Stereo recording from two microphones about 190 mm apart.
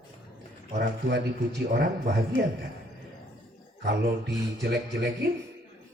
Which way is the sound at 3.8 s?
65° right (ahead or behind).